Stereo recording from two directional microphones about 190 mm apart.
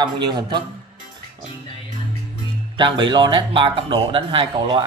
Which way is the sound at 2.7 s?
25° right (ahead or behind).